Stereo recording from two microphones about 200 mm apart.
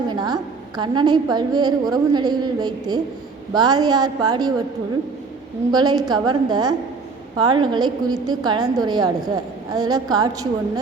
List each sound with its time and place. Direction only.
0.1 s a sound: 20° right (ahead or behind)
0.8 s a woman's voice: 20° right (ahead or behind)
5.7 s a woman's voice: 20° right (ahead or behind)